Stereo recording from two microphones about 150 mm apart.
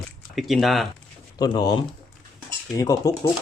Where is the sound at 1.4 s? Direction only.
25° left (ahead or behind).